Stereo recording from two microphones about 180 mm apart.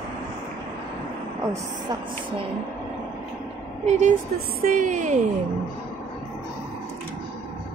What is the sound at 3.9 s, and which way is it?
A woman's voice, 40° right (ahead or behind).